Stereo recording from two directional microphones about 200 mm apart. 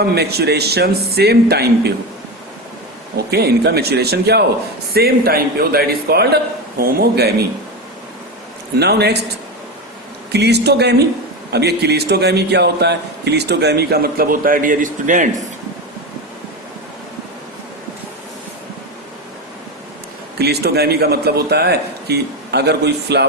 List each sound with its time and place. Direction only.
0.0 s speech: 55° right (ahead or behind)
3.2 s speech: 55° right (ahead or behind)
8.8 s a man's voice: 55° right (ahead or behind)
10.3 s a man's voice: 55° right (ahead or behind); by 15.3 s 40° right (ahead or behind)
20.4 s speech: 55° right (ahead or behind)